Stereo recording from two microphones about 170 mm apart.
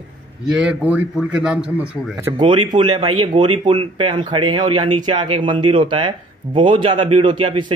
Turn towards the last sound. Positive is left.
turn(degrees=-30)  # may be behind; listen again after turning